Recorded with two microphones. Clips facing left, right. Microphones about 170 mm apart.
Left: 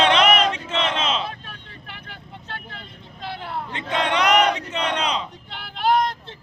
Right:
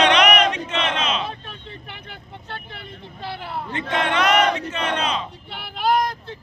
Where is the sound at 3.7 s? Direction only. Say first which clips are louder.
Right 1 dB; 20° left (ahead or behind).